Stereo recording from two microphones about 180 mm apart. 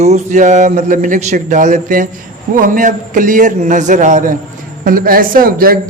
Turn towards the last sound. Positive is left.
turn(degrees=-55)  # may be behind; listen again after turning